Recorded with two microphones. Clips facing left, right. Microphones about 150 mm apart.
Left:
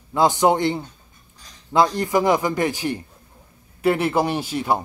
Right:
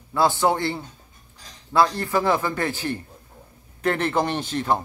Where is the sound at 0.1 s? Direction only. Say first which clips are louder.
Left 3 dB; 15° left (ahead or behind).